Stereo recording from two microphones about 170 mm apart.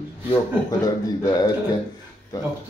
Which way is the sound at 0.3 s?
20° left (ahead or behind).